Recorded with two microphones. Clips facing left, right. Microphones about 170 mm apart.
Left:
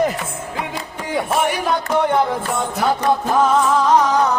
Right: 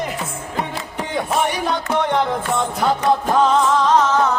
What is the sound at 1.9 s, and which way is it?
Music, 5° left (ahead or behind).